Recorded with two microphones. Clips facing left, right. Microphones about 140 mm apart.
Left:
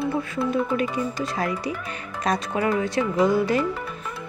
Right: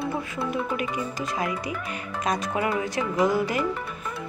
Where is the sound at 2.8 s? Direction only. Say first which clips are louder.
Left 3 dB; 25° left (ahead or behind).